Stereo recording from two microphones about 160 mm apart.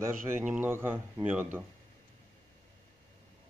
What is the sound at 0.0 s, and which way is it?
A man's voice, 10° right (ahead or behind).